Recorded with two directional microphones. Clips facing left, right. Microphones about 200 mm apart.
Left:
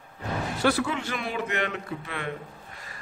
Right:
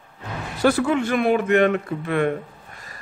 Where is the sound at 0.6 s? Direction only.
50° right (ahead or behind).